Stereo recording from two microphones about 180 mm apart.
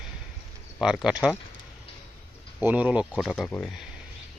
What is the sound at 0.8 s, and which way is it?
Speech, 5° right (ahead or behind).